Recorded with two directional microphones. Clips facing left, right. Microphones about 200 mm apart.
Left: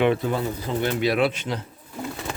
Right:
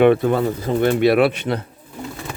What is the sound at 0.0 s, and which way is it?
Speech, 60° right (ahead or behind).